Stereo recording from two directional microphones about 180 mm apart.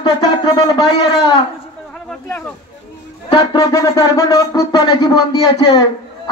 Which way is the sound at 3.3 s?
25° left (ahead or behind).